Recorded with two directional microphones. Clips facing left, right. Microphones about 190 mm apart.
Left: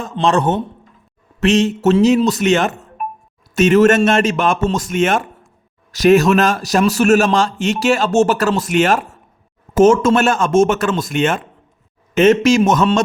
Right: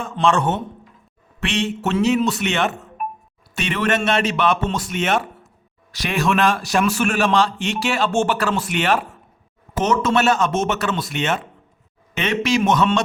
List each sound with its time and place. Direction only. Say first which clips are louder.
0.0 s a man's voice: left 3 dB; 35° left (ahead or behind)